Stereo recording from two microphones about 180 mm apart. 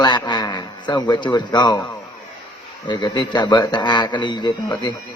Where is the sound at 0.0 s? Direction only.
25° left (ahead or behind).